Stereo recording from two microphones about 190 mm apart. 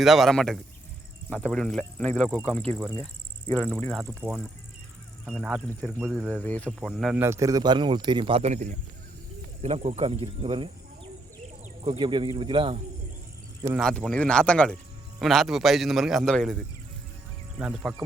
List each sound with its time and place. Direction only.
0.0 s speech: centre (ahead or behind)
4.2 s speech: 15° right (ahead or behind); by 6.7 s 10° left (ahead or behind)
6.7 s speech: 5° right (ahead or behind); by 10.7 s 30° right (ahead or behind)
11.9 s speech: 25° right (ahead or behind)
13.7 s speech: centre (ahead or behind)
17.6 s speech: 5° right (ahead or behind)